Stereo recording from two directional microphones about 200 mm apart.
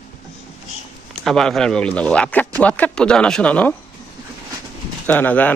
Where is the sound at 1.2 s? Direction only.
Centre (ahead or behind).